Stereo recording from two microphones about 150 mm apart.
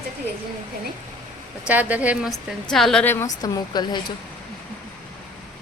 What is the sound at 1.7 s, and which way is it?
A woman's voice, 10° right (ahead or behind).